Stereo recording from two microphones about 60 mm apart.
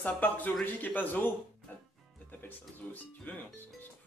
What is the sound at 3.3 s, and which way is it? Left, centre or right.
Speech, left.